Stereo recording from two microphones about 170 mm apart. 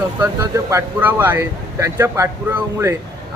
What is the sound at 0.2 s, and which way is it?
Speech, 15° right (ahead or behind).